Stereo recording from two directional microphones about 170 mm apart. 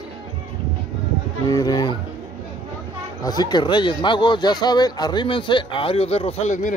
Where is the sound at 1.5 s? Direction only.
20° left (ahead or behind).